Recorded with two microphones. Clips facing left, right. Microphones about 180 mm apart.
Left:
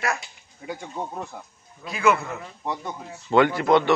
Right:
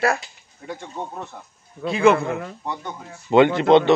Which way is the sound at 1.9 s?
25° right (ahead or behind).